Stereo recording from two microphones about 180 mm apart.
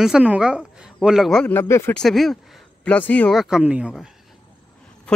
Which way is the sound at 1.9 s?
Centre (ahead or behind).